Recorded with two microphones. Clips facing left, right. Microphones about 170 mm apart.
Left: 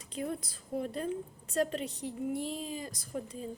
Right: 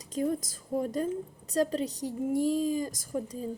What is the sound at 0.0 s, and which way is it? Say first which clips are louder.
A woman's voice: right 7 dB; 40° right (ahead or behind).